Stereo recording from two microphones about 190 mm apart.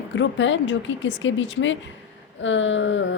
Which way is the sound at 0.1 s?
75° left (ahead or behind).